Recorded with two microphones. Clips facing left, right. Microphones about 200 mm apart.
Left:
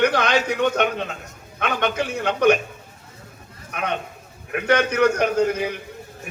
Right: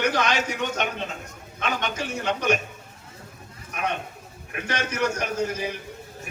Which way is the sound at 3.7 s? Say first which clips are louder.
Left 2 dB; 60° left (ahead or behind).